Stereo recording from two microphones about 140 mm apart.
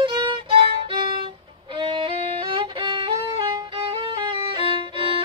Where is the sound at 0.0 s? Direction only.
35° right (ahead or behind).